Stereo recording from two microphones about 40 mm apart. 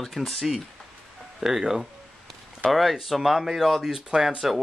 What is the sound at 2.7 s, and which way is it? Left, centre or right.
Speech, centre.